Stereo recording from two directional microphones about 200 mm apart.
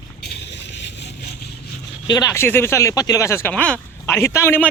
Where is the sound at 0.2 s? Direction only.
55° left (ahead or behind).